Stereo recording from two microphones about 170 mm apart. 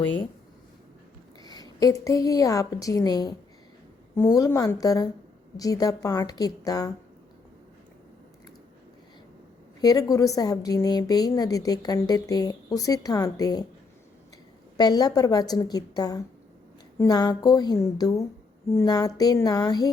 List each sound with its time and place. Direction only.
1.4 s a woman's voice: 20° left (ahead or behind)
4.4 s a woman's voice: 20° left (ahead or behind)
9.8 s a woman's voice: 20° left (ahead or behind)
14.8 s a woman's voice: 25° left (ahead or behind)